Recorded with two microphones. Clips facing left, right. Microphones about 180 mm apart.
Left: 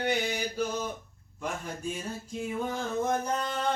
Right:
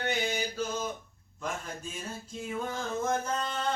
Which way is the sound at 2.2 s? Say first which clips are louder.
Left 3 dB; 15° left (ahead or behind).